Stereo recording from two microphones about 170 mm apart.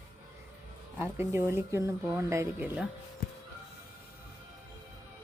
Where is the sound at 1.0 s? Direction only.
15° right (ahead or behind).